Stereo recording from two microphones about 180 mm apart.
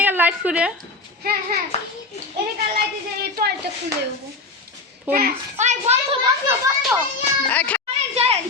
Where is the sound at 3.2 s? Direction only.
60° right (ahead or behind).